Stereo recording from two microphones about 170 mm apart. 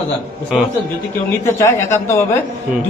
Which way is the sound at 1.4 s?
15° left (ahead or behind).